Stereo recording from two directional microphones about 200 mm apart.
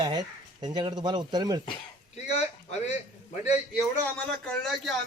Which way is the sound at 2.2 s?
35° left (ahead or behind).